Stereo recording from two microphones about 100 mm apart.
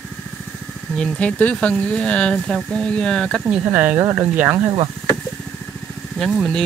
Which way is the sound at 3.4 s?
15° right (ahead or behind).